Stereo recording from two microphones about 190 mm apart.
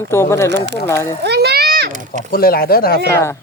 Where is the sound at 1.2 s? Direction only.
60° right (ahead or behind).